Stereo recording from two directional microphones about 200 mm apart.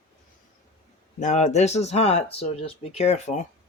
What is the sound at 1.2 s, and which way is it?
Speech, 35° left (ahead or behind).